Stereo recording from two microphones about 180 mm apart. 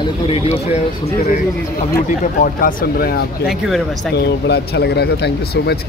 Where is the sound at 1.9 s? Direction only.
50° left (ahead or behind).